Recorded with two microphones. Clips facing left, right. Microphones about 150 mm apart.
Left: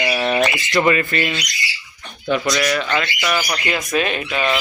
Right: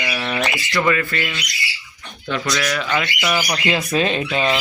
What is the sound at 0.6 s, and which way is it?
Speech, 20° left (ahead or behind).